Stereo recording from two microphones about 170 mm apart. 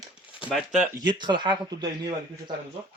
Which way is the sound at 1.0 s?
25° right (ahead or behind).